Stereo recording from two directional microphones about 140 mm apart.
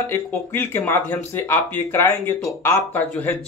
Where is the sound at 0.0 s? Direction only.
15° left (ahead or behind).